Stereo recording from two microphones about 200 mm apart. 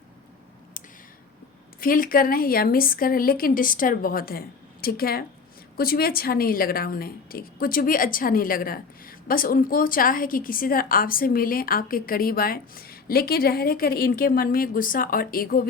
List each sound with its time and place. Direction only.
1.8 s a woman's voice: 45° left (ahead or behind)